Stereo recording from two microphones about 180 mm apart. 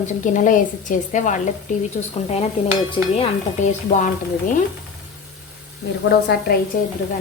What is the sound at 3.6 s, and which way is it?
Speech, 45° left (ahead or behind).